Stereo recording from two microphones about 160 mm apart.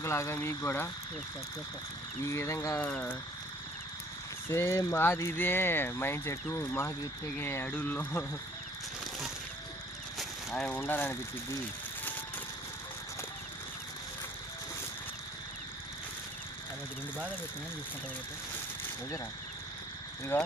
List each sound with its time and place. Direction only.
0.0 s speech: 15° left (ahead or behind)
2.2 s speech: 15° left (ahead or behind)
2.8 s speech: 10° left (ahead or behind)
4.4 s speech: 15° left (ahead or behind)
10.2 s speech: 5° left (ahead or behind)
20.3 s speech: 15° left (ahead or behind)